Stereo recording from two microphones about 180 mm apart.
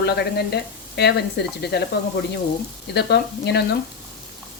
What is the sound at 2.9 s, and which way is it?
Speech, 65° left (ahead or behind).